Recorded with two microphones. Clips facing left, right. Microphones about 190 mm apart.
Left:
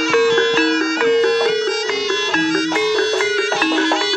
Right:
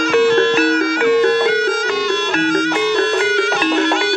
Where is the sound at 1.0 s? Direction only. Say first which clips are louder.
Right 1 dB; 55° right (ahead or behind).